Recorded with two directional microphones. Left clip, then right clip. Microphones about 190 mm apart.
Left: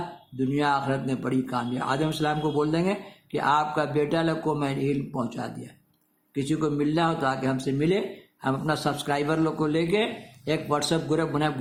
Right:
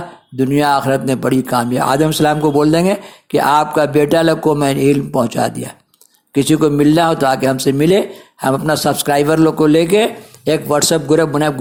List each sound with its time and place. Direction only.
0.3 s a man's voice: 45° right (ahead or behind)